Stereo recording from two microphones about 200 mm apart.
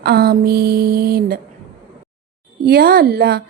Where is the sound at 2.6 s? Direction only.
45° right (ahead or behind).